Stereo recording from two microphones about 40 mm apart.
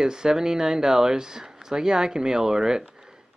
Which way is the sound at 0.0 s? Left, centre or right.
Centre.